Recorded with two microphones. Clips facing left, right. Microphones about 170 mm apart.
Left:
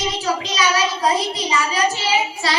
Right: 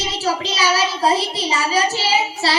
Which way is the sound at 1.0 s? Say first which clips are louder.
Right 1 dB; 30° right (ahead or behind).